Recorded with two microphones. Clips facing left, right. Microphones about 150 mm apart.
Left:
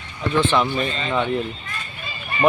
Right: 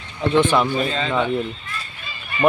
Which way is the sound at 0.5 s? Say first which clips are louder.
Right 2 dB; 5° right (ahead or behind).